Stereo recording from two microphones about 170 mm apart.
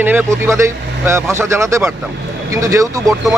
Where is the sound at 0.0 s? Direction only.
10° right (ahead or behind).